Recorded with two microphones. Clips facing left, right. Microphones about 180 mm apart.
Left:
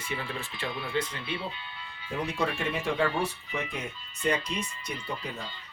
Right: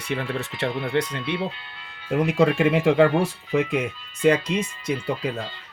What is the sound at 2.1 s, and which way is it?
Speech, 90° right.